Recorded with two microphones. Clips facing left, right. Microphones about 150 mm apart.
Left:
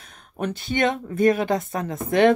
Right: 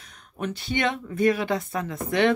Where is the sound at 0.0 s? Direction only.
50° left (ahead or behind).